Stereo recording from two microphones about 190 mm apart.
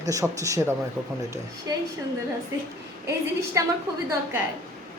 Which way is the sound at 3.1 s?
15° right (ahead or behind).